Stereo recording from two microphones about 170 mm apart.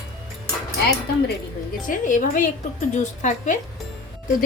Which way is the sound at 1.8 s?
50° left (ahead or behind).